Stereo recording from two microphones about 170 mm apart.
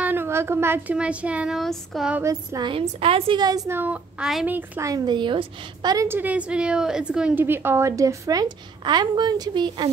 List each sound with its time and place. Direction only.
0.0 s speech: 10° right (ahead or behind)
2.2 s a woman's voice: 25° right (ahead or behind)